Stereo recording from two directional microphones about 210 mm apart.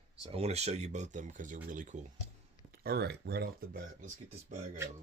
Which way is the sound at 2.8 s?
50° right (ahead or behind).